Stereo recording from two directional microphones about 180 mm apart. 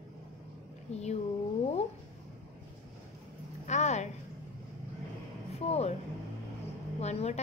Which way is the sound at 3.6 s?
40° left (ahead or behind).